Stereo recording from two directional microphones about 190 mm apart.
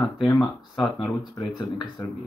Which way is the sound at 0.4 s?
20° left (ahead or behind).